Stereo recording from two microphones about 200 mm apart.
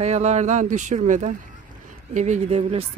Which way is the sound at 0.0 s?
35° right (ahead or behind).